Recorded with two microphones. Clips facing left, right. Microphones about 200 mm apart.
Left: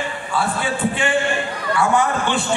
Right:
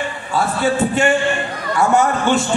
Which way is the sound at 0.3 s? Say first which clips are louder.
Right 5 dB; 45° right (ahead or behind).